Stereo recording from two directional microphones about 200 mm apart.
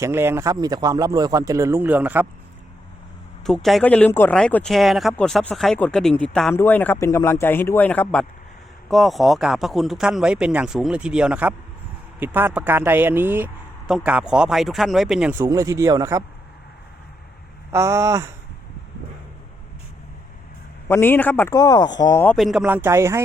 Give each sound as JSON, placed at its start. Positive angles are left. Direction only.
{"t": 0.0, "sound": "speech", "side_deg": -10}
{"t": 3.4, "sound": "speech", "side_deg": 0}
{"t": 17.7, "sound": "speech", "side_deg": -15}
{"t": 20.8, "sound": "speech", "side_deg": 10}
{"t": 22.4, "sound": "speech", "side_deg": 0}